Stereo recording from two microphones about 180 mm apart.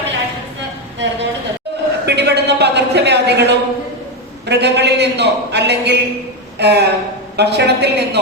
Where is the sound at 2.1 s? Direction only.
70° right (ahead or behind).